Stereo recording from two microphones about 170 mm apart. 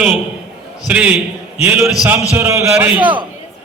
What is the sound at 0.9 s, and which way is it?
A man's voice, 10° right (ahead or behind).